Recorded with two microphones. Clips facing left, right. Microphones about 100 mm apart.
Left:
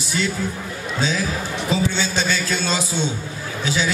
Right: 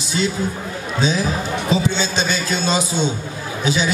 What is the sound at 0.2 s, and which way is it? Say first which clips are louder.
A man's voice: right 3 dB; 25° right (ahead or behind).